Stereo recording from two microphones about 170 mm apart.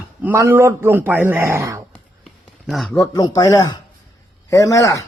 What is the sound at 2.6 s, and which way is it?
Speech, centre (ahead or behind).